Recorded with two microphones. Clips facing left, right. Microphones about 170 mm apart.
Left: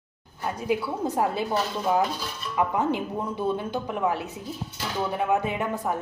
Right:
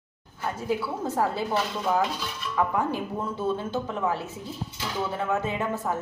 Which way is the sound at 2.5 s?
20° left (ahead or behind).